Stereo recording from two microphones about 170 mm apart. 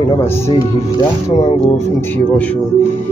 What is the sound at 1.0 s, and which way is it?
Speech, 25° left (ahead or behind).